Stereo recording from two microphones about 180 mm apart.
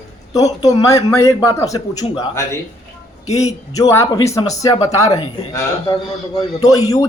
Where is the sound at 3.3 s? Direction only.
35° left (ahead or behind).